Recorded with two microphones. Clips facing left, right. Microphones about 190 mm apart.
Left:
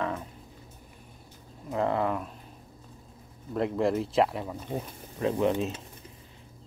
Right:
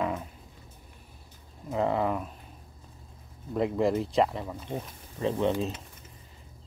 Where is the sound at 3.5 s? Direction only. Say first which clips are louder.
Right 1 dB; centre (ahead or behind).